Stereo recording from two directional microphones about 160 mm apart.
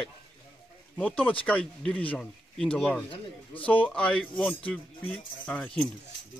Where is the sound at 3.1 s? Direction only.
35° left (ahead or behind).